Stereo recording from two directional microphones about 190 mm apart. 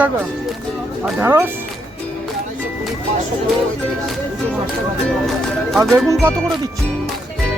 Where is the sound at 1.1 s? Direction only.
15° right (ahead or behind).